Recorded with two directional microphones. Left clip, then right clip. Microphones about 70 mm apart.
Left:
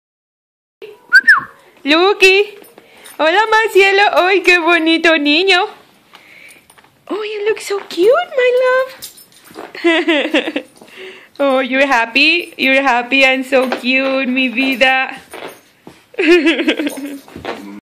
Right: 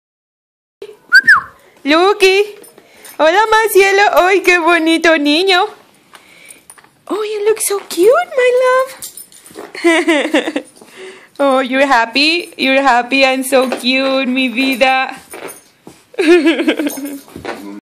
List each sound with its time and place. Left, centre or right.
1.1 s dog: centre
3.2 s a woman's voice: right
7.1 s a woman's voice: right
16.2 s speech: right